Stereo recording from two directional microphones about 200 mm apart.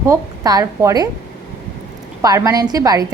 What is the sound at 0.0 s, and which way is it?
A woman's voice, 15° right (ahead or behind).